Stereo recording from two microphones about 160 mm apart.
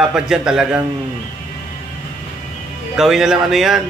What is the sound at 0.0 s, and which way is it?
Speech, 5° right (ahead or behind).